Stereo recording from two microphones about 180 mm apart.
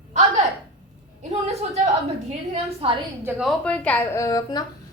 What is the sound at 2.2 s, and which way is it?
Speech, 30° right (ahead or behind).